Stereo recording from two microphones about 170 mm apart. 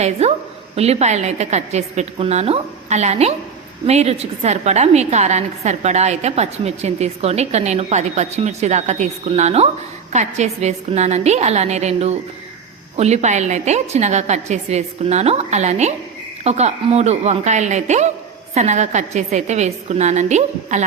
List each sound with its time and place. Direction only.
0.0 s a woman's voice: 40° right (ahead or behind)